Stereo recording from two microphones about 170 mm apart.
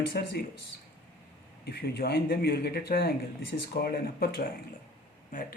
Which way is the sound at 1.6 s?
70° left (ahead or behind).